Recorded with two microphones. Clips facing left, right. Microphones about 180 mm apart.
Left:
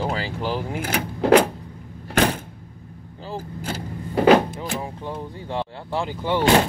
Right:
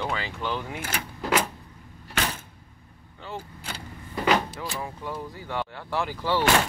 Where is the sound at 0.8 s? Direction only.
50° left (ahead or behind).